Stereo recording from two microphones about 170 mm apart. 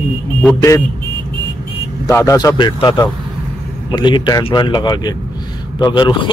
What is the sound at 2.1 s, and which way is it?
A man's voice, 20° left (ahead or behind).